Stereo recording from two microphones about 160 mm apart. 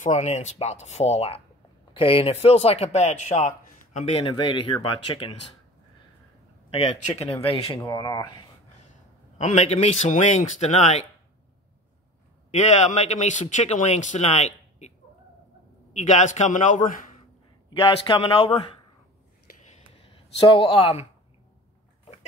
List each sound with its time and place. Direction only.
0.0 s a man's voice: 50° left (ahead or behind)
6.7 s speech: 40° left (ahead or behind)
7.8 s speech: 25° left (ahead or behind)
9.4 s a man's voice: 45° left (ahead or behind)
12.4 s a man's voice: 45° left (ahead or behind)
16.0 s a man's voice: 45° left (ahead or behind)
17.6 s speech: 30° left (ahead or behind)
20.1 s speech: 35° left (ahead or behind)